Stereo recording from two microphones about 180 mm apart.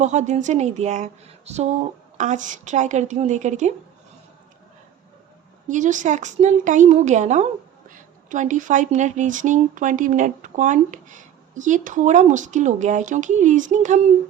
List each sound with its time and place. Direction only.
0.0 s speech: 40° right (ahead or behind)
5.6 s speech: 45° right (ahead or behind)